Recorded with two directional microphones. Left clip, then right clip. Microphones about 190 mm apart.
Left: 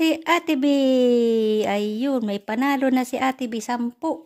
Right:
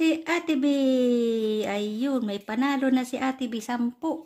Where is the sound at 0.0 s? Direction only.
40° left (ahead or behind).